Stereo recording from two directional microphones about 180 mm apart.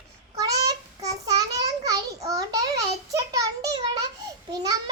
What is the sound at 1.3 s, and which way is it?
A child's voice, 20° right (ahead or behind).